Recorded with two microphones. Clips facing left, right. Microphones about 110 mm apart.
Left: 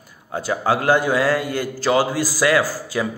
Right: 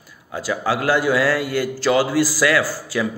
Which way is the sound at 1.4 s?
40° left (ahead or behind).